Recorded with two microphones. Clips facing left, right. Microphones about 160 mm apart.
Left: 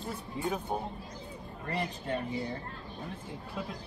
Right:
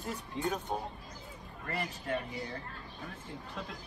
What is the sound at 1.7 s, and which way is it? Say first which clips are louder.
Speech: left 2 dB; 20° left (ahead or behind).